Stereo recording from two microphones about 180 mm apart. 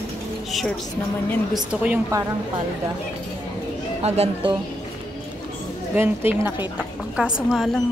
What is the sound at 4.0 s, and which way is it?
Speech, 35° right (ahead or behind).